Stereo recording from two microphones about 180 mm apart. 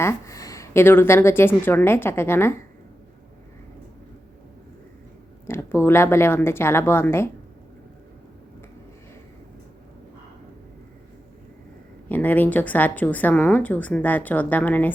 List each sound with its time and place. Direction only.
0.0 s a woman's voice: 15° left (ahead or behind)
5.5 s a woman's voice: 15° left (ahead or behind)
12.0 s a woman's voice: 10° left (ahead or behind)